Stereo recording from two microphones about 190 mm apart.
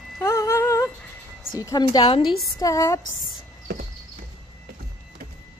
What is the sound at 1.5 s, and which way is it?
A woman's voice, 20° left (ahead or behind).